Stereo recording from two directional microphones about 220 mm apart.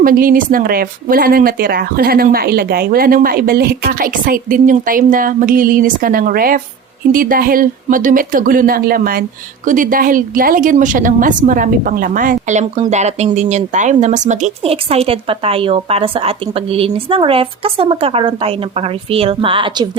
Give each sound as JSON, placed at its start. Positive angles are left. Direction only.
{"t": 0.0, "sound": "speech", "side_deg": -40}